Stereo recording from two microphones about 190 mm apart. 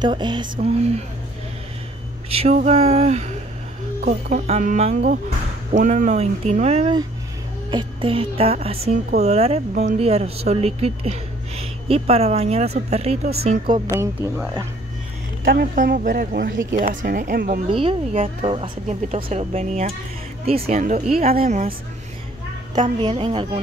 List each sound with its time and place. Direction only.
0.0 s a woman's voice: 25° right (ahead or behind)
2.2 s a woman's voice: 35° right (ahead or behind)
13.9 s speech: 10° right (ahead or behind)
15.4 s speech: 50° right (ahead or behind)
17.6 s speech: 30° right (ahead or behind)
21.4 s speech: 45° right (ahead or behind)
22.8 s a woman's voice: 25° right (ahead or behind)